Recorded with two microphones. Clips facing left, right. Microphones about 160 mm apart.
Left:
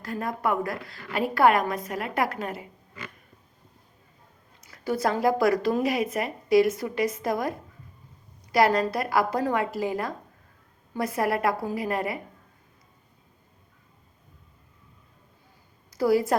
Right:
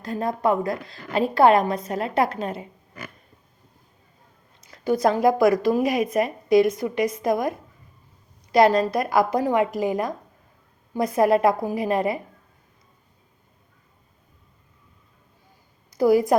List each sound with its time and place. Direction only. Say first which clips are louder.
0.0 s a woman's voice: right 5 dB; 25° right (ahead or behind)
4.6 s a woman's voice: right 6 dB; 20° right (ahead or behind)
16.0 s a woman's voice: right 4 dB; 20° right (ahead or behind)